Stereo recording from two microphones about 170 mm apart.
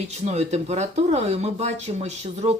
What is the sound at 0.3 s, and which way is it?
Speech, 40° right (ahead or behind).